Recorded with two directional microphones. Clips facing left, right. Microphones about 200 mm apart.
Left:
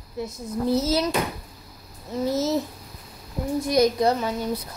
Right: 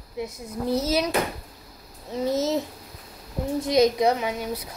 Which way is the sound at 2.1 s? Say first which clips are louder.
Even; 15° right (ahead or behind).